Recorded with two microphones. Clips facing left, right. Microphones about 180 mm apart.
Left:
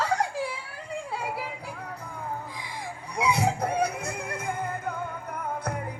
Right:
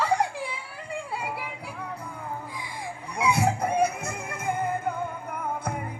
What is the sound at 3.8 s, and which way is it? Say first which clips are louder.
Music: right 2 dB; 50° right (ahead or behind).